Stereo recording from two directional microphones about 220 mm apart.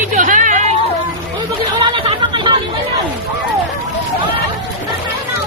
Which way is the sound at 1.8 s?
20° right (ahead or behind).